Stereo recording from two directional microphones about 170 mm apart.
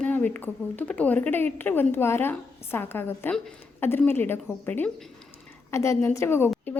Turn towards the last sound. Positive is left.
turn(degrees=15)  # may be behind; listen again after turning